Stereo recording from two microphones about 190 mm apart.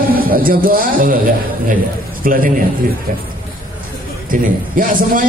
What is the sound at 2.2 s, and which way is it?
Speech, 50° right (ahead or behind).